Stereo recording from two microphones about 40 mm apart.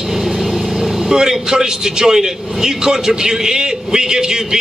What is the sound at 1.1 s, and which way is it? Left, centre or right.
A man's voice, centre.